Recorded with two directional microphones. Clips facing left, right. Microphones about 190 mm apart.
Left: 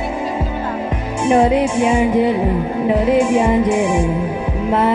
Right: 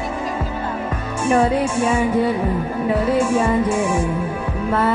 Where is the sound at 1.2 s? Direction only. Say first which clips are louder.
Left 4 dB; 20° left (ahead or behind).